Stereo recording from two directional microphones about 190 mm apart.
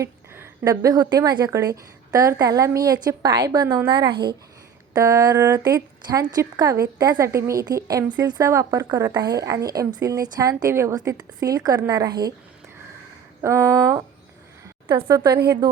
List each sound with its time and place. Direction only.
0.0 s a woman's voice: 15° right (ahead or behind)
13.4 s a woman's voice: 15° right (ahead or behind)